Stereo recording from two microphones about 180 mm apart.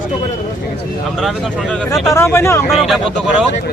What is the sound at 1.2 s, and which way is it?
Speech, centre (ahead or behind).